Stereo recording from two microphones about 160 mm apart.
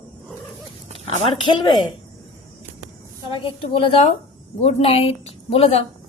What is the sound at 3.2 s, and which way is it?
A woman's voice, 30° left (ahead or behind).